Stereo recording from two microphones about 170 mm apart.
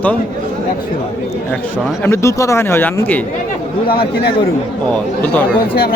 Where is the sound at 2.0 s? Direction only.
15° left (ahead or behind).